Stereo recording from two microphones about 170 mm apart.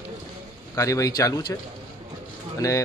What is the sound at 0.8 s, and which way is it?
Speech, 20° left (ahead or behind).